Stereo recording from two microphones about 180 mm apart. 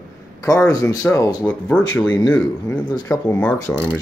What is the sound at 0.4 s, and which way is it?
Speech, 20° left (ahead or behind).